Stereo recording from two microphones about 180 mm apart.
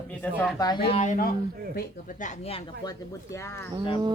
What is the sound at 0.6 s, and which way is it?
Speech, 25° left (ahead or behind).